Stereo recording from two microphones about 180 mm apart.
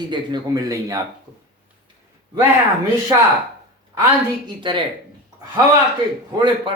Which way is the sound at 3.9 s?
20° right (ahead or behind).